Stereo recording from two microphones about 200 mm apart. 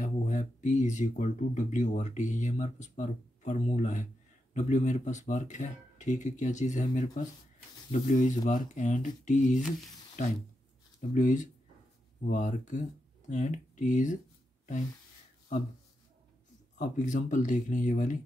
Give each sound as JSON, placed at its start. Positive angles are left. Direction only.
{"t": 0.0, "sound": "speech", "side_deg": 35}
{"t": 11.0, "sound": "speech", "side_deg": 40}
{"t": 16.7, "sound": "speech", "side_deg": 40}